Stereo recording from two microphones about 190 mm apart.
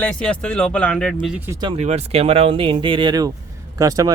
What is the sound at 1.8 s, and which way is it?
Speech, 35° right (ahead or behind).